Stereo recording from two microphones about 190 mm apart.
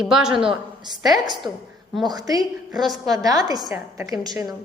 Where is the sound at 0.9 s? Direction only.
20° right (ahead or behind).